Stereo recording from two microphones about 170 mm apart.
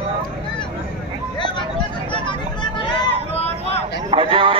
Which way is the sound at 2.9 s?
30° left (ahead or behind).